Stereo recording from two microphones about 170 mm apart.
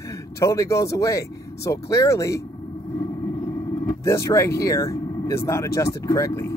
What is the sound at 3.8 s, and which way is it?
Speech, 15° left (ahead or behind).